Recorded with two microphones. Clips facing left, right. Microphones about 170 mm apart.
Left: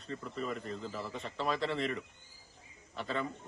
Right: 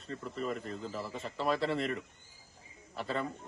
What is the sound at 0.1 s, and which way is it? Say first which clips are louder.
Speech: right 1 dB; 40° right (ahead or behind).